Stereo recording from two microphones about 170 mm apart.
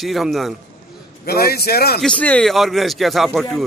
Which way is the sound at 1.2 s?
65° left (ahead or behind).